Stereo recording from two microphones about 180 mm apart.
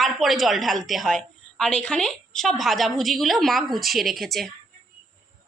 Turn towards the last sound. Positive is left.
turn(degrees=0)  # may be behind; listen again after turning